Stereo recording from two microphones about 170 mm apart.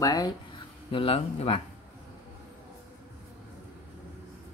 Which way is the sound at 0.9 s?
35° left (ahead or behind).